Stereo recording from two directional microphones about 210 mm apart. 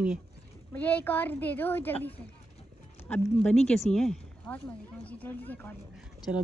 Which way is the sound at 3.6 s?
Centre (ahead or behind).